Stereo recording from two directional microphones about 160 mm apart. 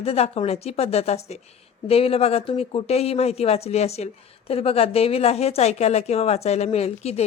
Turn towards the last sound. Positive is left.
turn(degrees=40)  # may be behind; listen again after turning